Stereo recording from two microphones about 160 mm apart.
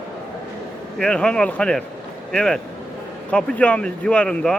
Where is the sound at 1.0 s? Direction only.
5° left (ahead or behind).